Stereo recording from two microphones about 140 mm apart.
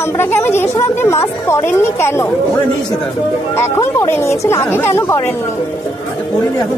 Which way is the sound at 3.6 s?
20° left (ahead or behind).